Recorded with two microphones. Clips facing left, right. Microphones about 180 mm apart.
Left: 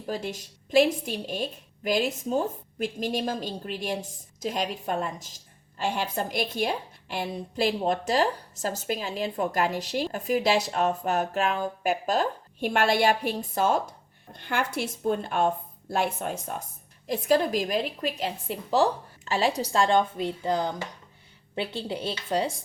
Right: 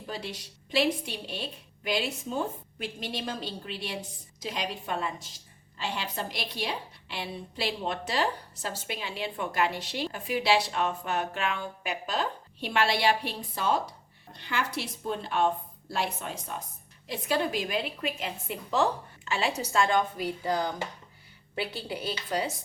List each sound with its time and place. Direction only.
0.1 s a woman's voice: 45° left (ahead or behind); by 22.4 s 25° left (ahead or behind)